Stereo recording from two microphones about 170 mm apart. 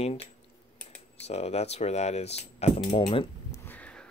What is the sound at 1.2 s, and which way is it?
Speech, 40° left (ahead or behind).